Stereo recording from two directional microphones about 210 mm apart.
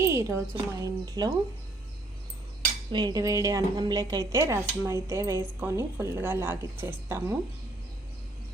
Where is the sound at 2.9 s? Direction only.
20° right (ahead or behind).